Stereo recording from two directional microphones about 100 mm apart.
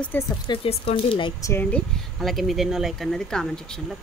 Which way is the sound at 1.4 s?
30° left (ahead or behind).